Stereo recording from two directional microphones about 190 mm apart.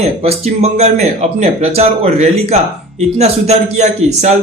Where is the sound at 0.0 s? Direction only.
35° right (ahead or behind).